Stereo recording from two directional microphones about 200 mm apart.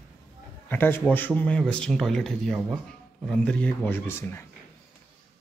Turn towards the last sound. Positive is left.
turn(degrees=10)  # may be behind; listen again after turning